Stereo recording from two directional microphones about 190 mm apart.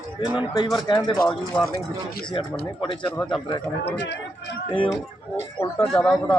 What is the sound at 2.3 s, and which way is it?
Speech, 25° left (ahead or behind).